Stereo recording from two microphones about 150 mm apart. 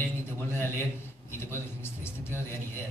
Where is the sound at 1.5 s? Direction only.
15° left (ahead or behind).